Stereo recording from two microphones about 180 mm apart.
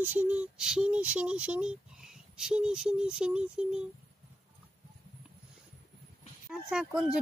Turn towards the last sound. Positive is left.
turn(degrees=-5)  # may be behind; listen again after turning